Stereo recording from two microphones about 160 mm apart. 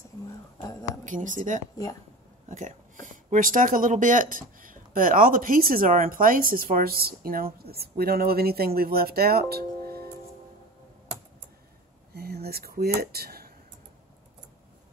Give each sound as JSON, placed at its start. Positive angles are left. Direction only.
{"t": 1.0, "sound": "speech", "side_deg": -55}
{"t": 12.1, "sound": "speech", "side_deg": -80}